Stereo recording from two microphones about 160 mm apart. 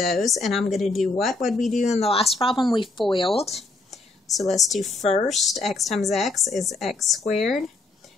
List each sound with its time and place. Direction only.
0.0 s speech: centre (ahead or behind)
1.9 s speech: 40° left (ahead or behind)
3.5 s whispering: centre (ahead or behind)
5.0 s speech: 40° left (ahead or behind)
5.3 s speech: centre (ahead or behind)